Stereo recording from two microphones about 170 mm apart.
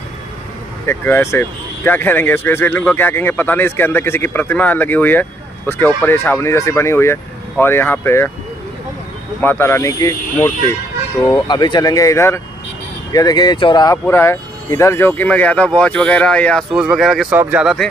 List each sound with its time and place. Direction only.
0.8 s speech: 15° left (ahead or behind)
9.4 s speech: 10° left (ahead or behind)
13.8 s speech: 15° left (ahead or behind); by 17.8 s 5° right (ahead or behind)